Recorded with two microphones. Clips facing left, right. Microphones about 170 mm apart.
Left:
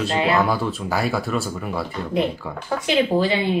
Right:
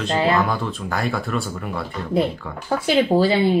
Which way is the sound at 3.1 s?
35° right (ahead or behind).